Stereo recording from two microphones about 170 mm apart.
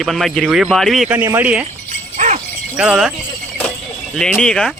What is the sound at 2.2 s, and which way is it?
Livestock, 45° right (ahead or behind).